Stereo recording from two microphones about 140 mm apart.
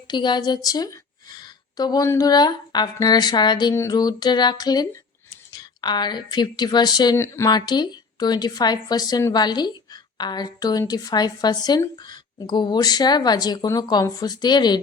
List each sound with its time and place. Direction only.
0.1 s a woman's voice: 30° left (ahead or behind)